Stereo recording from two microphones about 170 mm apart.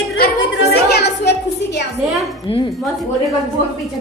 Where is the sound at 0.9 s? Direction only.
80° left.